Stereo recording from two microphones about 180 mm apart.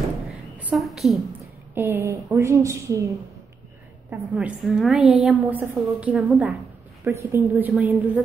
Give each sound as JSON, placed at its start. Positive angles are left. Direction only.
{"t": 0.6, "sound": "a woman's voice", "side_deg": -5}
{"t": 1.8, "sound": "a woman's voice", "side_deg": -15}
{"t": 4.1, "sound": "a woman's voice", "side_deg": -5}